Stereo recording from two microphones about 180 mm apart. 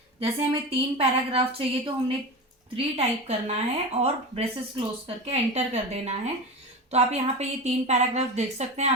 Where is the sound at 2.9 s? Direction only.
35° right (ahead or behind).